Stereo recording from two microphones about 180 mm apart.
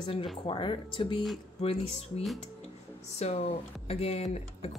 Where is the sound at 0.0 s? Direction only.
30° left (ahead or behind).